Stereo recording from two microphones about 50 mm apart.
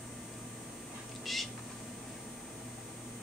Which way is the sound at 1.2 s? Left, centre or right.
Centre.